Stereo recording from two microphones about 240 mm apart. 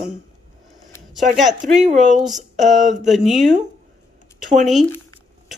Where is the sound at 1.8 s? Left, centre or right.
Right.